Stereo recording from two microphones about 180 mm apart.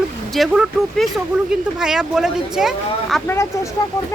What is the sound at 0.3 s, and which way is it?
Speech, centre (ahead or behind).